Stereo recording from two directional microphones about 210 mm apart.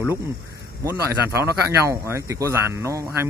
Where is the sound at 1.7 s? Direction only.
15° right (ahead or behind).